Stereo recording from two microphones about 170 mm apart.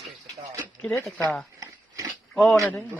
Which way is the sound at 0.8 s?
5° left (ahead or behind).